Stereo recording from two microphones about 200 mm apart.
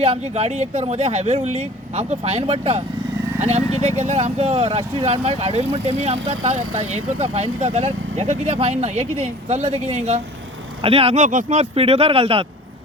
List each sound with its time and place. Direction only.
0.0 s speech: 30° right (ahead or behind)